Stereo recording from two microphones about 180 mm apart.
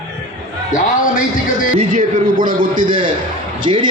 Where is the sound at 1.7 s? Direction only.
45° right (ahead or behind).